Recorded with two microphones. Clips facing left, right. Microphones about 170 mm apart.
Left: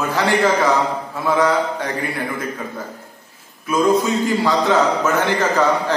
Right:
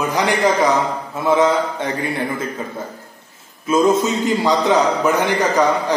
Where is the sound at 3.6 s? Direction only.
25° right (ahead or behind).